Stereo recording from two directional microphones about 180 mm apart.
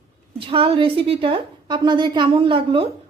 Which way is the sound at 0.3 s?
30° right (ahead or behind).